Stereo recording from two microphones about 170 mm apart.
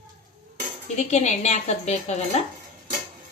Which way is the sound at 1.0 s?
40° left (ahead or behind).